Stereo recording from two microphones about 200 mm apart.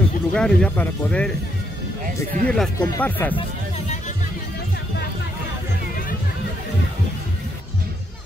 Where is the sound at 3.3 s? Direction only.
35° left (ahead or behind).